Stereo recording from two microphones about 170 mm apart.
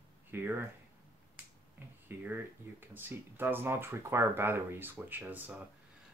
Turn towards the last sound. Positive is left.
turn(degrees=-10)  # may be behind; listen again after turning